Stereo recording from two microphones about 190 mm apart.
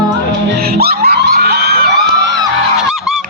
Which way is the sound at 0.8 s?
55° right (ahead or behind).